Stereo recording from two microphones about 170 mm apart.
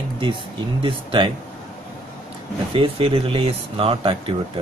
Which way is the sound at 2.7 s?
30° right (ahead or behind).